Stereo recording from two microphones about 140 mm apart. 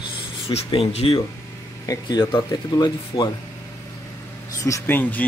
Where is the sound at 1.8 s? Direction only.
30° left (ahead or behind).